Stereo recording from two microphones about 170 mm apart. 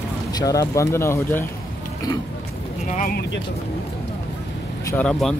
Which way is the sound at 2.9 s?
50° left (ahead or behind).